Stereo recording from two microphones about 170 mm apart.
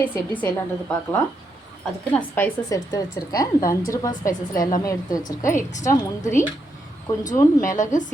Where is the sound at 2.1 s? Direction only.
10° left (ahead or behind).